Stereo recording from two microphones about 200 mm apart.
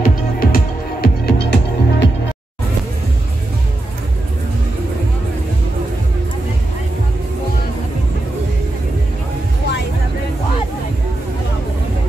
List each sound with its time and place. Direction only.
0.0 s music: 45° left (ahead or behind)